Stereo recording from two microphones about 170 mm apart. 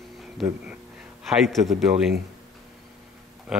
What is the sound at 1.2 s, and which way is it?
Speech, centre (ahead or behind).